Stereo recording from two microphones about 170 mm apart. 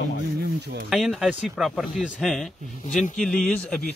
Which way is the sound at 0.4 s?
70° right (ahead or behind).